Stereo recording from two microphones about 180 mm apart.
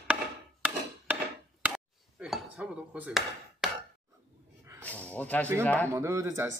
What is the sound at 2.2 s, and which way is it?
Chopping, 5° right (ahead or behind).